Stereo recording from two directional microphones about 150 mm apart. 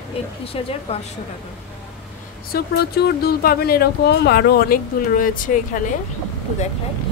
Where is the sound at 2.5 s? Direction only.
90° left; by 5.6 s 60° left (ahead or behind).